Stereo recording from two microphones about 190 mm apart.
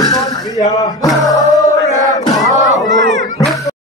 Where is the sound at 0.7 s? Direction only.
20° left (ahead or behind).